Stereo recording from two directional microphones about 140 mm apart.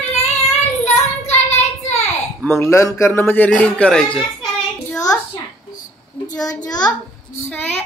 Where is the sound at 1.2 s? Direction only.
55° left (ahead or behind).